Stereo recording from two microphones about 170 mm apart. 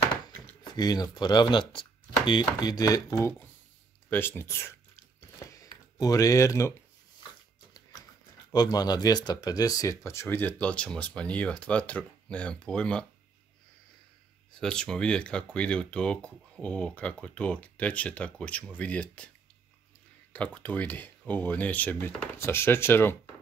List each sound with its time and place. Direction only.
0.7 s speech: 25° left (ahead or behind)
5.5 s a sound: 20° left (ahead or behind)
8.5 s speech: 25° left (ahead or behind); by 13.0 s 5° left (ahead or behind)
14.6 s speech: 5° left (ahead or behind)
20.3 s speech: 10° left (ahead or behind)